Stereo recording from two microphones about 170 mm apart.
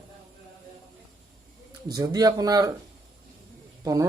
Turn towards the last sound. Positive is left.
turn(degrees=-20)  # may be behind; listen again after turning